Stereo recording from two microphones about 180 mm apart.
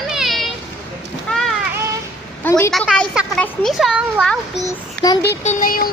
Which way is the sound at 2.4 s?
15° left (ahead or behind).